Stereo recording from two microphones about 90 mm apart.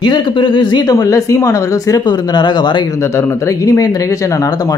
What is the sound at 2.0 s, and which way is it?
Speech, 55° left (ahead or behind).